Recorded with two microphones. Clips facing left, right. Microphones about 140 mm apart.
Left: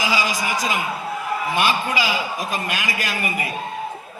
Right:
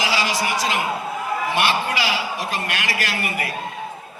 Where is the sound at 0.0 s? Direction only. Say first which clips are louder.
Even; 75° right (ahead or behind).